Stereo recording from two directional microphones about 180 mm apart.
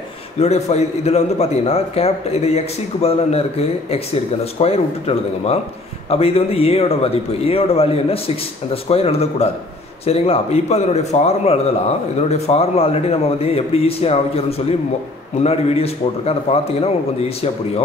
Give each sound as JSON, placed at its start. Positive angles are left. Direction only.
{"t": 0.4, "sound": "a man's voice", "side_deg": 35}